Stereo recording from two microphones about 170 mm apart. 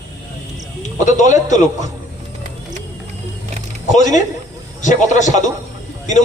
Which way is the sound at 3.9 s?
45° left (ahead or behind).